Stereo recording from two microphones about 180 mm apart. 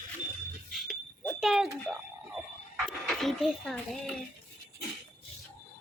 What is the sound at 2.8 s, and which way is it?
Speech, centre (ahead or behind).